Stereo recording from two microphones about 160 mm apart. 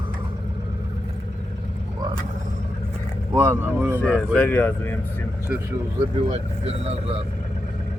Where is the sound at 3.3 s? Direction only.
15° right (ahead or behind).